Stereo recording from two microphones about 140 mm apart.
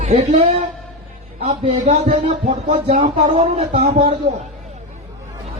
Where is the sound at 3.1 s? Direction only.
50° right (ahead or behind).